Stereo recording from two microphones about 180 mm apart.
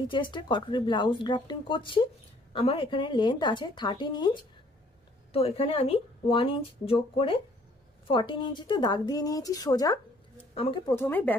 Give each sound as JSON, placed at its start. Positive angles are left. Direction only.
{"t": 0.1, "sound": "speech", "side_deg": 25}
{"t": 10.5, "sound": "speech", "side_deg": 30}
{"t": 11.0, "sound": "speech", "side_deg": 10}